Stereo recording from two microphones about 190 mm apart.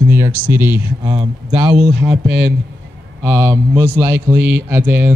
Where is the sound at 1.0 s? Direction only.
25° right (ahead or behind).